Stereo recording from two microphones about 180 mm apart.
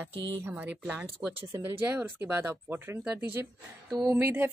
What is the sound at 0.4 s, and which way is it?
Speech, 10° right (ahead or behind).